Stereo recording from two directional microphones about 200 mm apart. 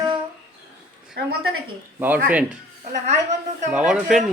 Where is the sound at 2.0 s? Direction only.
10° right (ahead or behind).